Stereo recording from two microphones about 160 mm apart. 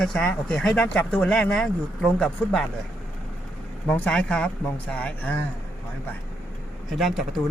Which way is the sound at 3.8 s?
10° left (ahead or behind).